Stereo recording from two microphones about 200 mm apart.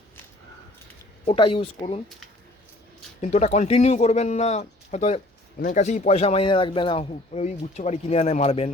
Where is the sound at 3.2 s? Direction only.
35° left (ahead or behind).